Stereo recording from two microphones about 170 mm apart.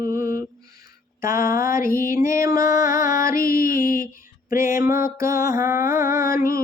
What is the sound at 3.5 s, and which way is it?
Music, 55° left (ahead or behind).